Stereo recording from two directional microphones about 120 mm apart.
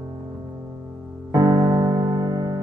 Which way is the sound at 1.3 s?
35° right (ahead or behind).